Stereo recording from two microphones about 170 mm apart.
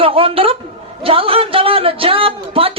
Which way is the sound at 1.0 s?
35° right (ahead or behind).